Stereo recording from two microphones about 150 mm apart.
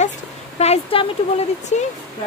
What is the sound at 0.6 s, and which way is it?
Speech, 40° left (ahead or behind).